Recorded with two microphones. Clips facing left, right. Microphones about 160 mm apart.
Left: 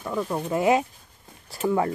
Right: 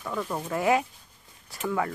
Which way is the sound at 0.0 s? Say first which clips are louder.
Left 4 dB; 15° left (ahead or behind).